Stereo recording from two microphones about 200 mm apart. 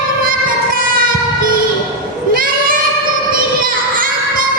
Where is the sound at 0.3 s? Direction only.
45° right (ahead or behind).